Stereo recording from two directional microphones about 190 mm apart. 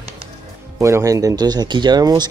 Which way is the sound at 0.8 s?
15° right (ahead or behind).